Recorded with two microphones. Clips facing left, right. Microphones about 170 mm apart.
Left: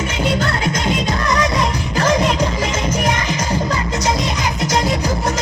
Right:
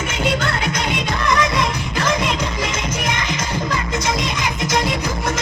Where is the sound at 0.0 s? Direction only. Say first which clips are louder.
Left 2 dB; 40° left (ahead or behind).